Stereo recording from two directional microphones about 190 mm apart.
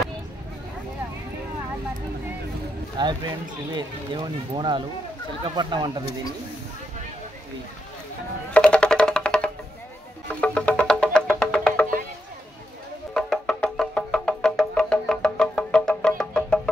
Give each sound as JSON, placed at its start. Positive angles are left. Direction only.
{"t": 3.7, "sound": "speech", "side_deg": -25}
{"t": 8.5, "sound": "music", "side_deg": 5}
{"t": 13.1, "sound": "music", "side_deg": 5}